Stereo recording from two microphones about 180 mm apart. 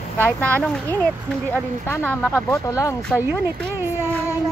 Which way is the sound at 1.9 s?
10° left (ahead or behind).